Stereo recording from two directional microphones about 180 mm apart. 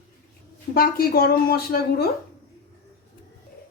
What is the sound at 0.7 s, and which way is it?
A woman's voice, 55° left (ahead or behind).